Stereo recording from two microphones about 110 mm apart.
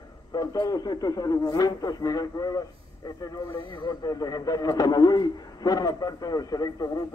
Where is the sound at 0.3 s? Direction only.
35° left (ahead or behind).